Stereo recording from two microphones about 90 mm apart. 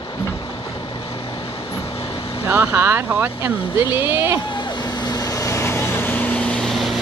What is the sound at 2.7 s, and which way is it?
Speech, 25° right (ahead or behind).